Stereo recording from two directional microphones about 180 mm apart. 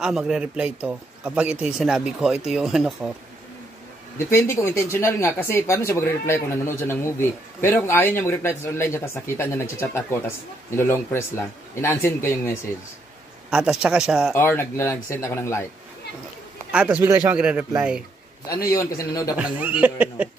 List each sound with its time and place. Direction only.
0.0 s speech: 5° right (ahead or behind)
4.3 s speech: 15° left (ahead or behind)
13.5 s speech: 5° right (ahead or behind)
14.3 s speech: 15° left (ahead or behind)
16.7 s speech: 5° right (ahead or behind)
18.8 s a man's voice: 20° left (ahead or behind)
19.3 s speech: 10° right (ahead or behind)